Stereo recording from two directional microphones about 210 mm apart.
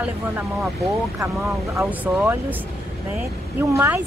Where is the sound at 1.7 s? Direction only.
10° right (ahead or behind).